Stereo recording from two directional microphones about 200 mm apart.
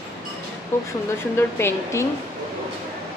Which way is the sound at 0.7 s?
10° left (ahead or behind).